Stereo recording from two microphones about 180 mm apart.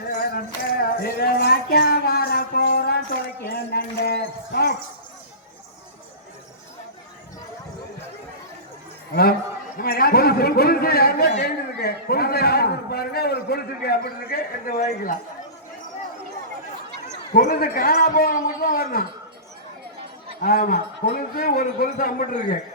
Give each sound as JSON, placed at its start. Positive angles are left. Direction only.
{"t": 0.1, "sound": "music", "side_deg": 55}
{"t": 9.7, "sound": "a man's voice", "side_deg": 55}
{"t": 14.8, "sound": "a man's voice", "side_deg": 45}
{"t": 17.3, "sound": "a man's voice", "side_deg": 55}
{"t": 20.4, "sound": "a man's voice", "side_deg": 55}